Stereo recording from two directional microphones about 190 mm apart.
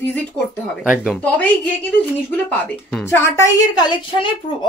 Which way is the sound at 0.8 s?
5° right (ahead or behind).